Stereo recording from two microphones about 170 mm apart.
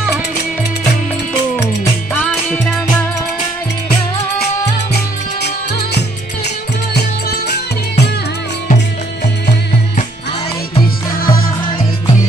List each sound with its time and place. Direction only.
2.1 s music: 5° left (ahead or behind)
4.9 s music: 70° left (ahead or behind)
10.7 s music: 30° left (ahead or behind)